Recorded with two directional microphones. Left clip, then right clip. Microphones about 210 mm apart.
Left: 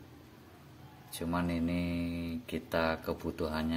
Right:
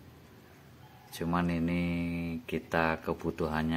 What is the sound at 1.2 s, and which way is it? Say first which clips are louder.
Speech: right 2 dB; 35° right (ahead or behind).